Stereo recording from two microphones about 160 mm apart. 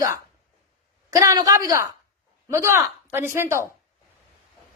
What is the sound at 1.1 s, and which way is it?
A woman's voice, 20° right (ahead or behind).